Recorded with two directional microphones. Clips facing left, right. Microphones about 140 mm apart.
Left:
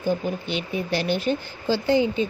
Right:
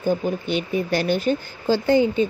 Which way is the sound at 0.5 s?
45° right (ahead or behind).